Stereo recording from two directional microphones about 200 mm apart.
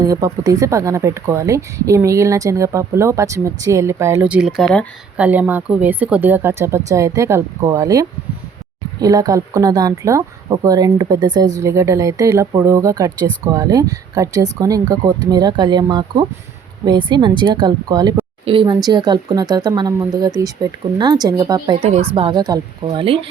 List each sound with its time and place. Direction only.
0.0 s speech: 20° right (ahead or behind)
21.8 s speech: 30° right (ahead or behind)